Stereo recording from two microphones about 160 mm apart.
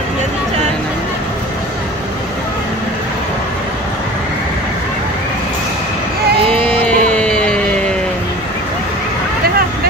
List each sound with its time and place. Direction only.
6.7 s music: 5° left (ahead or behind)